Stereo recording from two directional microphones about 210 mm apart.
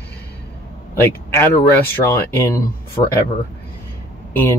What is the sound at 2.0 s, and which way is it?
Speech, 15° left (ahead or behind).